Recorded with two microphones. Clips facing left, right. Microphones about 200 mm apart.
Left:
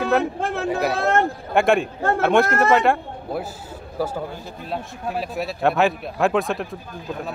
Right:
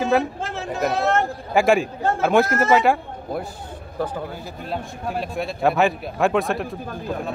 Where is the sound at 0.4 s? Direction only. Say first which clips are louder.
Left 5 dB; 60° left (ahead or behind).